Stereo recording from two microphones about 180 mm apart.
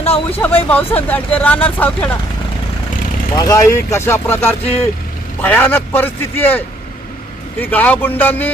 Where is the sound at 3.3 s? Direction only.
20° left (ahead or behind).